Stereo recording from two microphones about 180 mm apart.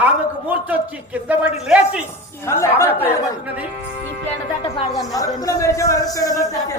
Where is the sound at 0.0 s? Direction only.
10° right (ahead or behind).